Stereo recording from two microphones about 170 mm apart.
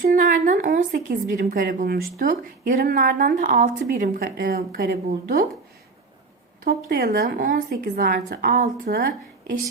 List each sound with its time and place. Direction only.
0.2 s a woman's voice: 50° right (ahead or behind)
6.7 s a woman's voice: 65° right (ahead or behind)